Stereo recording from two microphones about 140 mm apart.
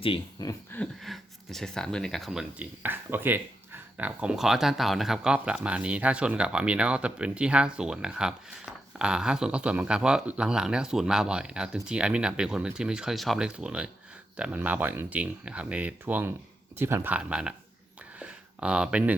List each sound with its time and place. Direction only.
0.4 s speech: 25° left (ahead or behind)
1.0 s speech: centre (ahead or behind)
18.2 s a sound: 10° right (ahead or behind)